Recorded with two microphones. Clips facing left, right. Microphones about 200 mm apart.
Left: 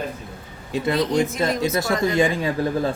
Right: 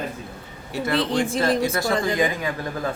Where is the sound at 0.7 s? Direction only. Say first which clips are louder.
Left 1 dB; 20° left (ahead or behind).